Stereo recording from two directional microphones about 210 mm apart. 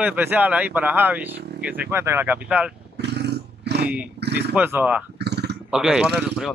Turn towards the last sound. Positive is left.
turn(degrees=0)  # may be behind; listen again after turning